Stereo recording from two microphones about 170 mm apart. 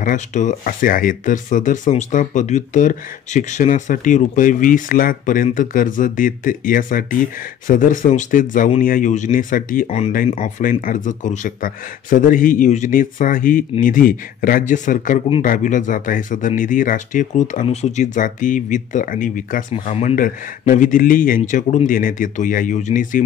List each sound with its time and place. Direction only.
0.0 s speech: 50° left (ahead or behind)
10.6 s speech: 55° left (ahead or behind)